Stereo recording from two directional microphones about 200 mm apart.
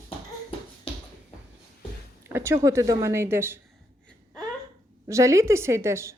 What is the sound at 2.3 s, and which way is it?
A woman's voice, 15° right (ahead or behind).